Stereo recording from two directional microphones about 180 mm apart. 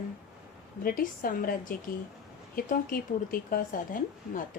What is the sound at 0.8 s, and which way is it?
A woman's voice, 55° left (ahead or behind).